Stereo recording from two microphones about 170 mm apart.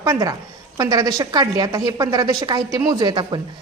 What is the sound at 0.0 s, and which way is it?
A woman's voice, 20° right (ahead or behind).